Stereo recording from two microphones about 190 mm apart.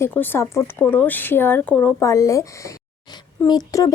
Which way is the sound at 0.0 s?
10° left (ahead or behind).